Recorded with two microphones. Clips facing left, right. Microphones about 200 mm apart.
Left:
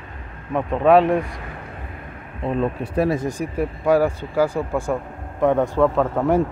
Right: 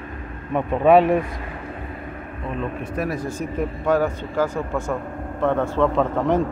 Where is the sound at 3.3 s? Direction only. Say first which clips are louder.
Left 1 dB; 10° left (ahead or behind).